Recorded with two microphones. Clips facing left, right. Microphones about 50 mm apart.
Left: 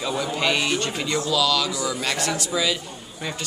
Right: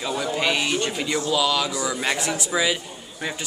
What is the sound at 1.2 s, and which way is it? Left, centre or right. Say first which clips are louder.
Speech: even; right.